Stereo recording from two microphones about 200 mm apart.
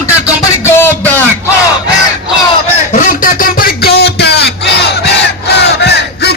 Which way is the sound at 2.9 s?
40° left (ahead or behind).